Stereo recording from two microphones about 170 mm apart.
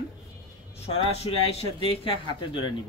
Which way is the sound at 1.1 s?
35° left (ahead or behind).